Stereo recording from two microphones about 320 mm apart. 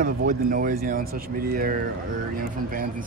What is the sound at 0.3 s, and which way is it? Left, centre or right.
Speech, right.